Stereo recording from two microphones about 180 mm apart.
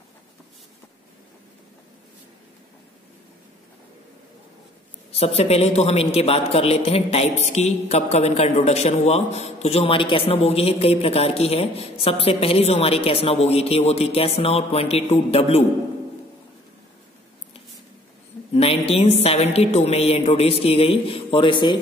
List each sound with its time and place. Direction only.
5.1 s a man's voice: 35° left (ahead or behind)
18.5 s a man's voice: 35° left (ahead or behind)